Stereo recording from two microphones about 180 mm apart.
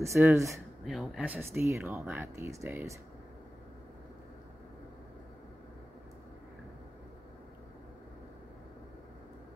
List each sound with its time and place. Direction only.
0.0 s speech: 15° right (ahead or behind)
0.8 s speech: centre (ahead or behind)